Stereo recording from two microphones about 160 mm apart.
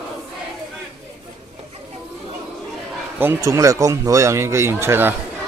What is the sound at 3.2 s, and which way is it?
Speech, 15° right (ahead or behind).